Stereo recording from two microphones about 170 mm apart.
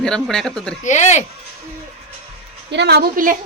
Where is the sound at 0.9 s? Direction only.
45° left (ahead or behind).